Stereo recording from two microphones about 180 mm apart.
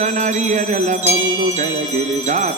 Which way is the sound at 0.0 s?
40° right (ahead or behind).